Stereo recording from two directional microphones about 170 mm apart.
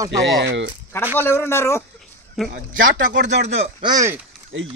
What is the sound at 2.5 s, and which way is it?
Speech, 50° right (ahead or behind).